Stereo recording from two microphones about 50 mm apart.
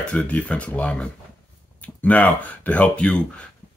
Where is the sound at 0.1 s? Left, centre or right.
Left.